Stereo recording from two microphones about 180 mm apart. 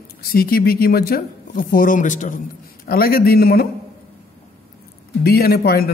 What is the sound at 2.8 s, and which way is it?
Speech, 55° left (ahead or behind).